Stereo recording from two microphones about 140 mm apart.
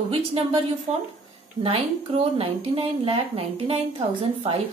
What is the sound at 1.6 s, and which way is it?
Speech, 45° right (ahead or behind).